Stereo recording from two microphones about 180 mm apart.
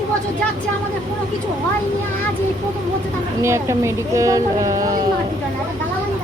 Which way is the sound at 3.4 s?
15° right (ahead or behind).